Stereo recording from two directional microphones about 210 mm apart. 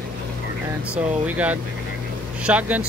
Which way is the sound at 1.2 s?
5° right (ahead or behind).